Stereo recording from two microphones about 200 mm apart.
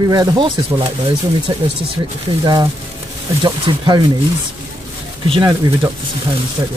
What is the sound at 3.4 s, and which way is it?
Speech, 20° right (ahead or behind).